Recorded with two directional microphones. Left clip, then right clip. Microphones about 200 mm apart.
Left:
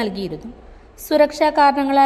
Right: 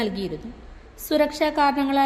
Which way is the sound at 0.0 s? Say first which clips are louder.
Left 3 dB; 15° left (ahead or behind).